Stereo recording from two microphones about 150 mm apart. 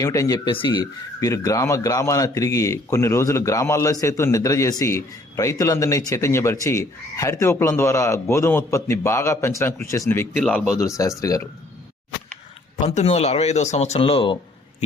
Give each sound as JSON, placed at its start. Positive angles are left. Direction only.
{"t": 0.0, "sound": "speech", "side_deg": 20}
{"t": 12.7, "sound": "speech", "side_deg": 50}